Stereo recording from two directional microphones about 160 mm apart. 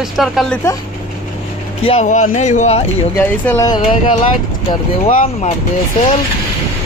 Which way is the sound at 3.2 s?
10° left (ahead or behind).